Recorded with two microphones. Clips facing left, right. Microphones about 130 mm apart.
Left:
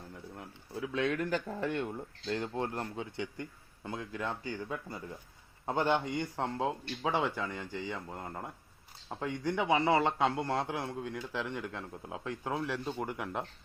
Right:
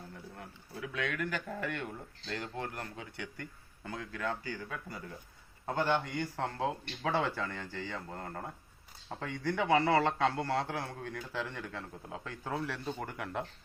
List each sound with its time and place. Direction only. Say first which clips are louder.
0.8 s a man's voice: left 4 dB; 30° left (ahead or behind); by 13.4 s 10° left (ahead or behind)